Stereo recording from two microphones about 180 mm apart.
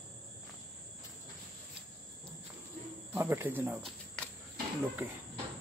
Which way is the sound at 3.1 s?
15° right (ahead or behind).